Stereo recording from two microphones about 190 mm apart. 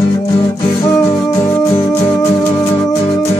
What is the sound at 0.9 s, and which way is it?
Music, 15° left (ahead or behind).